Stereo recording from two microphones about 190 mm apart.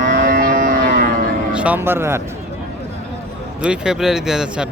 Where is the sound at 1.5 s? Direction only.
10° right (ahead or behind).